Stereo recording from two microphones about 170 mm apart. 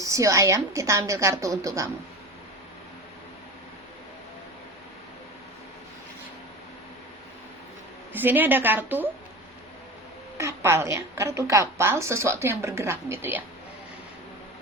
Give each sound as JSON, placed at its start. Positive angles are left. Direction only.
{"t": 0.0, "sound": "a woman's voice", "side_deg": -20}
{"t": 8.1, "sound": "a woman's voice", "side_deg": -10}
{"t": 10.3, "sound": "a woman's voice", "side_deg": -15}